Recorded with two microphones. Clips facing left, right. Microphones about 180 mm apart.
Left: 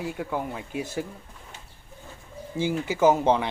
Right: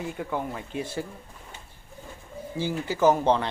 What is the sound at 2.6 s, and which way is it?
Speech, 15° left (ahead or behind).